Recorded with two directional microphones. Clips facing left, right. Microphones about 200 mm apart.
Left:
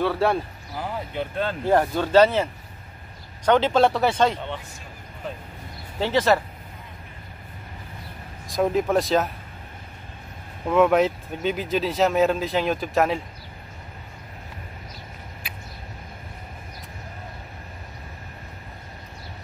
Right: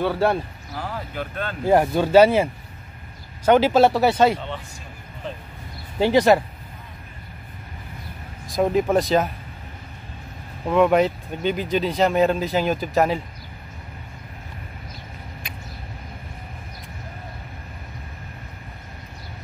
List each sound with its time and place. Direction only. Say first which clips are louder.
0.0 s speech: right 1 dB; centre (ahead or behind)
0.7 s speech: left 1 dB; 20° left (ahead or behind)
1.7 s speech: right 4 dB; 10° right (ahead or behind)
5.9 s speech: right 4 dB; 15° right (ahead or behind)
8.5 s speech: right 2 dB; centre (ahead or behind)
10.7 s speech: right 1 dB; centre (ahead or behind)